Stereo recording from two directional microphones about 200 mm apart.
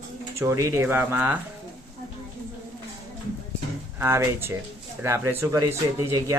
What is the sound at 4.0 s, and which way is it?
Speech, 15° right (ahead or behind).